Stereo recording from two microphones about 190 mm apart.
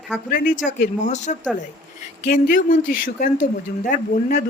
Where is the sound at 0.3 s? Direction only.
45° left (ahead or behind).